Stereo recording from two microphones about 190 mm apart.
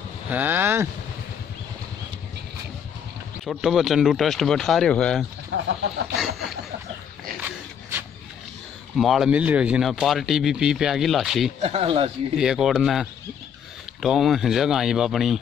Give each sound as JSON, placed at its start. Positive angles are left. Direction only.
{"t": 0.3, "sound": "speech", "side_deg": -10}
{"t": 3.4, "sound": "speech", "side_deg": 0}
{"t": 5.5, "sound": "chicken", "side_deg": -60}
{"t": 6.1, "sound": "speech", "side_deg": 0}
{"t": 8.9, "sound": "speech", "side_deg": 0}
{"t": 11.6, "sound": "speech", "side_deg": -30}
{"t": 12.4, "sound": "speech", "side_deg": -5}